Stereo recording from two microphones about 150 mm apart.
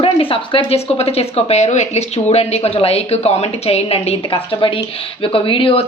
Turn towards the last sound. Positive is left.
turn(degrees=35)  # may be behind; listen again after turning